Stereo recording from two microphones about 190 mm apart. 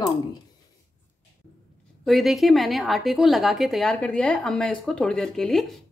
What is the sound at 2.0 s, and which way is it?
A woman's voice, centre (ahead or behind).